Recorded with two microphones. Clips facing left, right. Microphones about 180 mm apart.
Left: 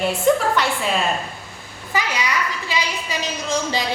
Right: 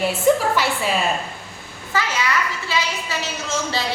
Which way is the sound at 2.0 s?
15° left (ahead or behind).